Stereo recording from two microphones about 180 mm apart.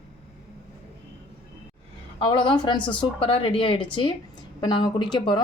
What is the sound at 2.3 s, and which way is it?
A woman's voice, 25° left (ahead or behind).